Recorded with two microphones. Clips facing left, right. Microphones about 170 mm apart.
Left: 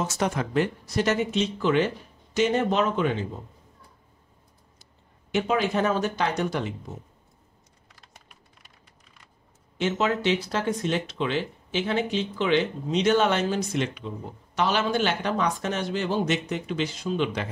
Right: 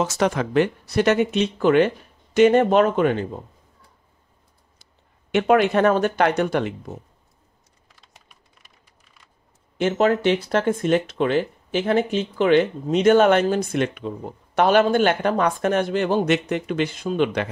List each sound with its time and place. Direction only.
0.0 s speech: 90° right; by 3.3 s 55° right (ahead or behind)
5.3 s speech: 65° right (ahead or behind)
9.8 s speech: 50° right (ahead or behind)